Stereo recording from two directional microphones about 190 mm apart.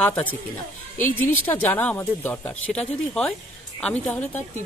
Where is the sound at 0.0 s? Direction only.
10° left (ahead or behind).